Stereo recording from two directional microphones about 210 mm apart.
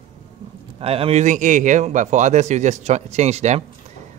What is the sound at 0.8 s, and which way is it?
A man's voice, 30° right (ahead or behind).